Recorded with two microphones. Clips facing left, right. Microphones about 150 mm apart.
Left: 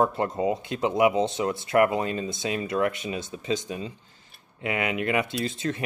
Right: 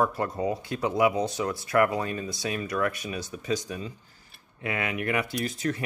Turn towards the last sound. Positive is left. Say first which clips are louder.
# left 1 dB
turn(degrees=25)  # may be behind; listen again after turning